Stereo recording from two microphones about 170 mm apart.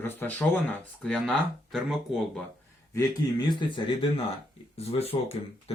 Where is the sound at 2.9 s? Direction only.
25° left (ahead or behind).